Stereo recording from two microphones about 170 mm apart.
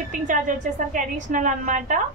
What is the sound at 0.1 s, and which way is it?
A woman's voice, 50° right (ahead or behind).